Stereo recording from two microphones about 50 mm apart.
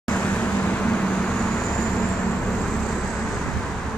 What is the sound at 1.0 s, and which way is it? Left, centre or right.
Vehicle, centre.